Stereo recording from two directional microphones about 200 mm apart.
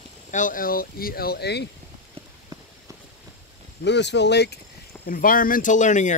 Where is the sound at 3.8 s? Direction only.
60° left (ahead or behind).